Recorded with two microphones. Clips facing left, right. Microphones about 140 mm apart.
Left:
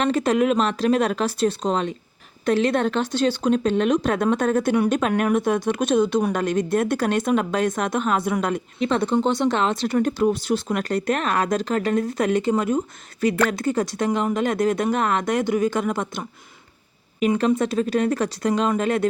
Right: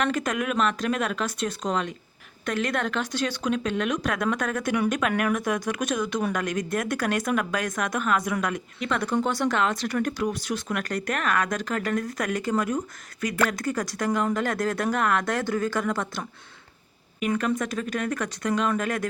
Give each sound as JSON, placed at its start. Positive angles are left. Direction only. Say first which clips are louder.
{"t": 0.0, "sound": "speech", "louder": "left 7 dB", "side_deg": 30}